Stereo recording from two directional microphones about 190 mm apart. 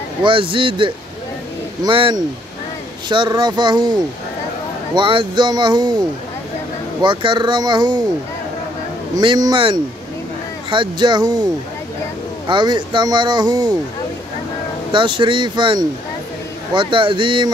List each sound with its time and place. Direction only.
0.2 s speech: 25° right (ahead or behind)
7.0 s speech: 25° right (ahead or behind)
9.1 s speech: 25° right (ahead or behind)
12.4 s speech: 25° right (ahead or behind)
14.9 s speech: 25° right (ahead or behind)